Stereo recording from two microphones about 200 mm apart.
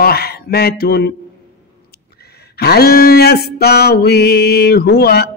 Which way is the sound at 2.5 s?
50° left (ahead or behind).